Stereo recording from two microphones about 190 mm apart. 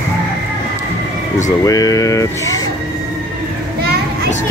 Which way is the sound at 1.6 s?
20° left (ahead or behind).